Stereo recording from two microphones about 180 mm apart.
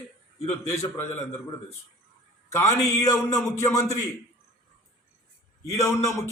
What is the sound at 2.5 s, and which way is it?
Speech, 15° left (ahead or behind).